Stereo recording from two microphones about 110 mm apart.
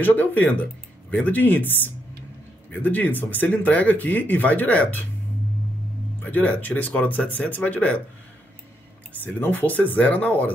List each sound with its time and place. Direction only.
0.0 s speech: 15° left (ahead or behind)
6.2 s speech: 15° left (ahead or behind)
9.1 s speech: 15° left (ahead or behind)